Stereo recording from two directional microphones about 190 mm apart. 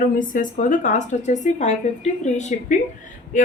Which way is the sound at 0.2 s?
45° left (ahead or behind).